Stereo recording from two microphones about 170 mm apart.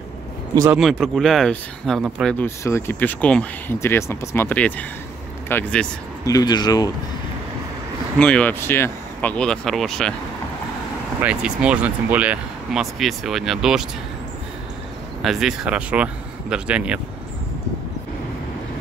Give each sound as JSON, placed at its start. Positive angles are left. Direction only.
{"t": 0.7, "sound": "speech", "side_deg": 0}
{"t": 2.3, "sound": "speech", "side_deg": 15}
{"t": 6.2, "sound": "speech", "side_deg": 25}
{"t": 8.2, "sound": "speech", "side_deg": 5}
{"t": 11.2, "sound": "speech", "side_deg": -5}
{"t": 15.2, "sound": "speech", "side_deg": 0}